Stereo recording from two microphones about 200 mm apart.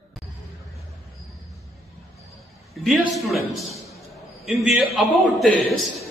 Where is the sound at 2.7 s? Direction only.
Centre (ahead or behind).